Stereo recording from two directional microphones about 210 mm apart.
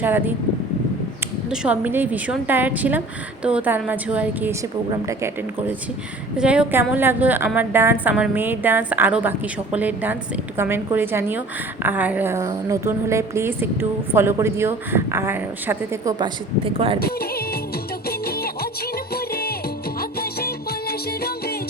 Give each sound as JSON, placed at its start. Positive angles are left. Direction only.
{"t": 0.0, "sound": "a woman's voice", "side_deg": -10}
{"t": 1.5, "sound": "a woman's voice", "side_deg": -5}
{"t": 17.0, "sound": "music", "side_deg": 45}